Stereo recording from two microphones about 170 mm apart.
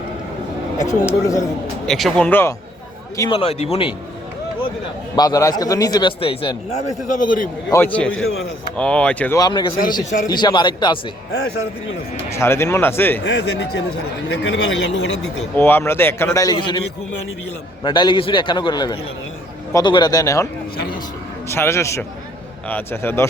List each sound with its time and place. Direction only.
0.8 s speech: 45° left (ahead or behind)
1.2 s speech: 20° left (ahead or behind)
1.9 s speech: centre (ahead or behind)
3.2 s speech: 30° left (ahead or behind)
5.1 s speech: 20° left (ahead or behind); by 7.5 s 55° left (ahead or behind)
7.7 s speech: 10° left (ahead or behind)
9.4 s speech: 25° left (ahead or behind)
12.4 s speech: 15° left (ahead or behind)
13.2 s speech: 90° left
15.5 s speech: 10° left (ahead or behind)
17.8 s speech: 25° left (ahead or behind)
21.5 s speech: 15° left (ahead or behind)